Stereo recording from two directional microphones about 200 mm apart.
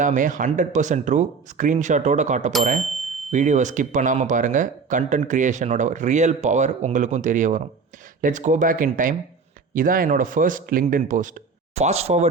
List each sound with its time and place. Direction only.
0.0 s speech: 40° right (ahead or behind)